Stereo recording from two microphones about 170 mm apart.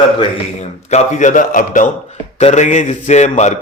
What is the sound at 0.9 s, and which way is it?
A man's voice, 45° left (ahead or behind).